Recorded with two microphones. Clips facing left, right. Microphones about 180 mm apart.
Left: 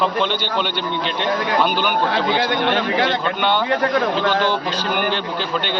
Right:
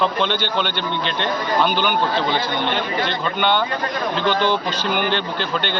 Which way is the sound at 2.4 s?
80° left.